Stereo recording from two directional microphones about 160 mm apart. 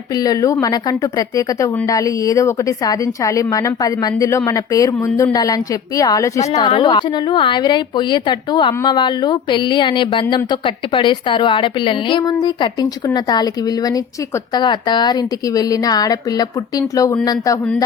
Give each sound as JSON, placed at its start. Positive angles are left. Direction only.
{"t": 0.2, "sound": "a woman's voice", "side_deg": 20}